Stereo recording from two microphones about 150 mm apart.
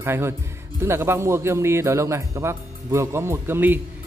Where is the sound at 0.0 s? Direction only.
15° right (ahead or behind).